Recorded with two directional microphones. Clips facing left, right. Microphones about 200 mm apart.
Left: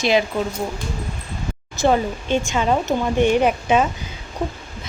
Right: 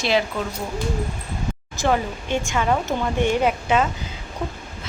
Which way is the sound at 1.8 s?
25° left (ahead or behind).